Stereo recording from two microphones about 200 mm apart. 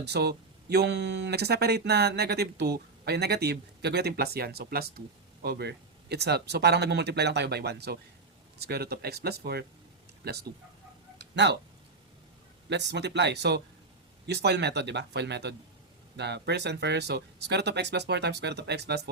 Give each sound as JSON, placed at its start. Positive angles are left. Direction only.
{"t": 0.0, "sound": "speech", "side_deg": -55}
{"t": 12.6, "sound": "speech", "side_deg": -60}